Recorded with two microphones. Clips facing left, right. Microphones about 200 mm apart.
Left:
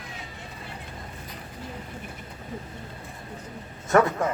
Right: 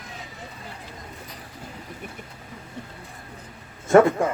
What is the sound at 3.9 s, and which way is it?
Speech, 30° right (ahead or behind).